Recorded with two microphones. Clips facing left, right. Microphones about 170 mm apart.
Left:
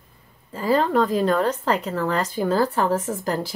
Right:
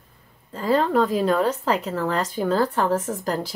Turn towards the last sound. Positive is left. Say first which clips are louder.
# left 1 dB
turn(degrees=5)  # may be behind; listen again after turning